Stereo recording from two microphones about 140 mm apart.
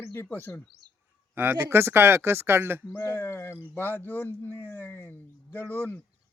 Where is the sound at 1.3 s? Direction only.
15° right (ahead or behind).